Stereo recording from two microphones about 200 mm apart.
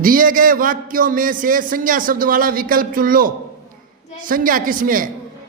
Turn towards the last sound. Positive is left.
turn(degrees=-45)  # may be behind; listen again after turning